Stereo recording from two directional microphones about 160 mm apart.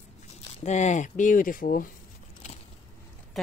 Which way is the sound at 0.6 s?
45° left (ahead or behind).